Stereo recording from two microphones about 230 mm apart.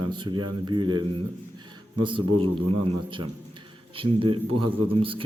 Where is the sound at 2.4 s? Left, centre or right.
Right.